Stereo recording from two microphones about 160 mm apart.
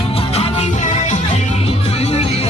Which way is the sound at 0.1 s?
40° left (ahead or behind).